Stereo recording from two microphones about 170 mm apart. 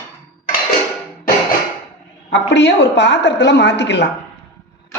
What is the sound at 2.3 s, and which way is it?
A woman's voice, 90° left.